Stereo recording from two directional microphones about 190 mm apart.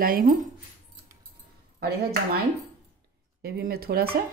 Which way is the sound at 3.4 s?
55° right (ahead or behind).